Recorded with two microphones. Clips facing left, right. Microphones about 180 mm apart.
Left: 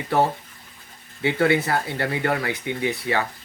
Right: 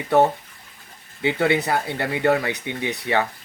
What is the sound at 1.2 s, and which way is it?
Speech, 20° right (ahead or behind).